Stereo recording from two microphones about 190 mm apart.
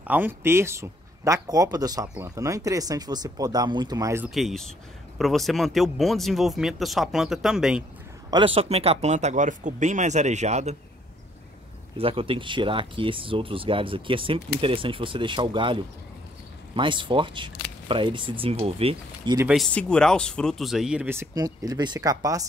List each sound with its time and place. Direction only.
0.0 s speech: 10° right (ahead or behind)
4.3 s speech: centre (ahead or behind)
8.3 s speech: 25° right (ahead or behind)
12.0 s speech: 30° right (ahead or behind)
19.5 s speech: 5° left (ahead or behind); by 22.4 s 20° right (ahead or behind)